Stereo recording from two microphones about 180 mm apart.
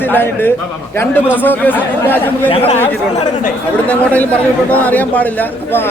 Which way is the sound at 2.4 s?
35° left (ahead or behind).